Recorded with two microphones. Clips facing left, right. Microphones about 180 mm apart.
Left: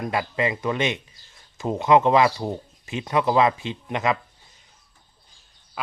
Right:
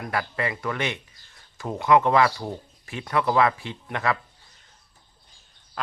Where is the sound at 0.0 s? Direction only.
20° left (ahead or behind).